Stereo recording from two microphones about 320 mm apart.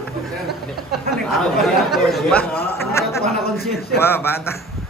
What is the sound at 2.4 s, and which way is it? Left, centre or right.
Speech, left.